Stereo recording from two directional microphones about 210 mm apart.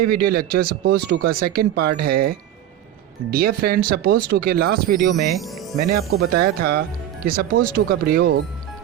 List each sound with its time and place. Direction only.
0.1 s speech: 45° right (ahead or behind)
5.4 s speech: centre (ahead or behind)
5.8 s speech: 45° right (ahead or behind)